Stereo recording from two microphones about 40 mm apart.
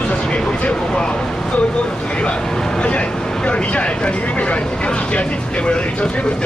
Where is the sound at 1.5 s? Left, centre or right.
Left.